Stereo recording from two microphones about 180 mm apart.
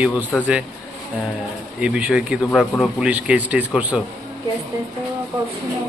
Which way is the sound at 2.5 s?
5° left (ahead or behind).